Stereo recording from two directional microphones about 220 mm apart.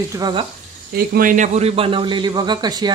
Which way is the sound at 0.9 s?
40° right (ahead or behind).